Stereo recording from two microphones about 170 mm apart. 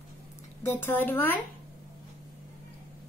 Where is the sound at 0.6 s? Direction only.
10° left (ahead or behind).